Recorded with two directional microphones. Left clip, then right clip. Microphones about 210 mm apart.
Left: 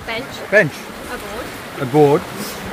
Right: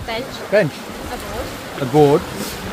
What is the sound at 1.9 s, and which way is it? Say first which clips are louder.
Speech: even; 5° left (ahead or behind).